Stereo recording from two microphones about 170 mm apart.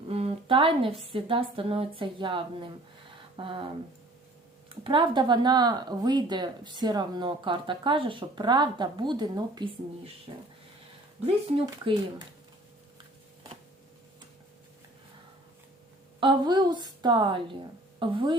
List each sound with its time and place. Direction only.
0.1 s a sound: 35° right (ahead or behind)
1.1 s speech: 30° right (ahead or behind)
4.7 s speech: 30° right (ahead or behind)
11.2 s speech: 30° right (ahead or behind)
16.2 s speech: 25° right (ahead or behind)